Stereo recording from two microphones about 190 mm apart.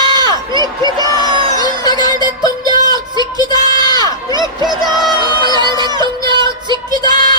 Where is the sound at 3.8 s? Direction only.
20° left (ahead or behind).